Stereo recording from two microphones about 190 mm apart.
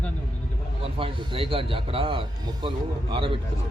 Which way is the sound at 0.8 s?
30° right (ahead or behind).